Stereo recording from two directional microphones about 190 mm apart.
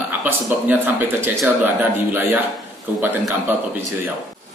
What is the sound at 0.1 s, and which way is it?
A man's voice, 10° right (ahead or behind).